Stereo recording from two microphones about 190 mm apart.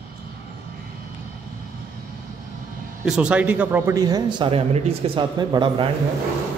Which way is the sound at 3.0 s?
5° right (ahead or behind).